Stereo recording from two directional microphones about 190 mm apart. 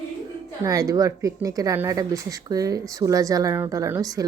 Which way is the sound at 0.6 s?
15° right (ahead or behind).